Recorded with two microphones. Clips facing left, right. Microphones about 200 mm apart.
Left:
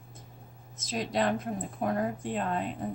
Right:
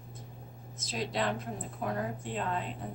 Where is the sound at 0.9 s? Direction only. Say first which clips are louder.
Left 4 dB; 45° left (ahead or behind).